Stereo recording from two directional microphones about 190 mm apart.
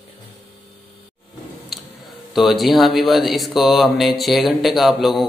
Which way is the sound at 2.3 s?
Centre (ahead or behind).